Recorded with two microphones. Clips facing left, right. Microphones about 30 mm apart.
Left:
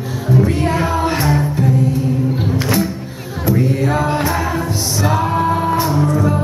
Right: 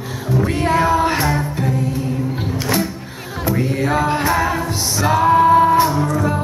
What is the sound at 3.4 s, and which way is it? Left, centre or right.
A capella, centre.